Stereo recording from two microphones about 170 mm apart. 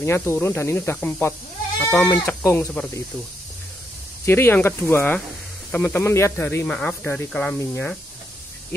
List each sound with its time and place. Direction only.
0.0 s speech: 15° left (ahead or behind)
4.3 s speech: 15° left (ahead or behind)